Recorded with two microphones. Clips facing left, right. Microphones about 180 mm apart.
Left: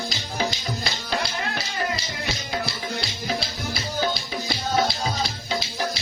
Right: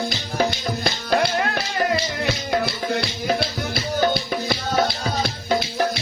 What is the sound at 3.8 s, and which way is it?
Music, 55° right (ahead or behind).